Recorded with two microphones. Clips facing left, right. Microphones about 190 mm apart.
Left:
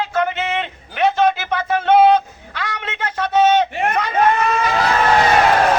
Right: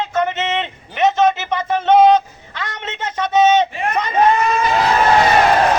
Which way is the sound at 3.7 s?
60° left (ahead or behind).